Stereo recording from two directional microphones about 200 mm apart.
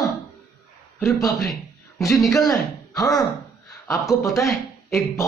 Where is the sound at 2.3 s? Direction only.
15° left (ahead or behind).